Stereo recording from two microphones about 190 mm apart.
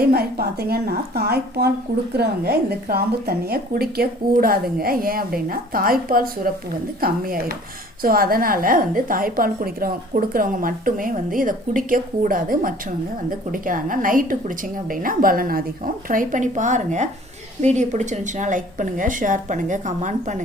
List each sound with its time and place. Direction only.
0.0 s a woman's voice: 55° right (ahead or behind)